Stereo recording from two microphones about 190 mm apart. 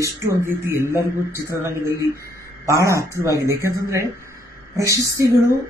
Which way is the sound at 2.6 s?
15° right (ahead or behind).